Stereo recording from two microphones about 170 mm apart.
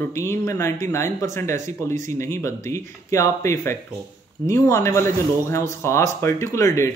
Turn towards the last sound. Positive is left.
turn(degrees=15)  # may be behind; listen again after turning